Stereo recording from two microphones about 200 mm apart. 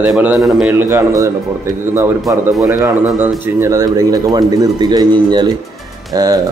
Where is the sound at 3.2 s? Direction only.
10° right (ahead or behind).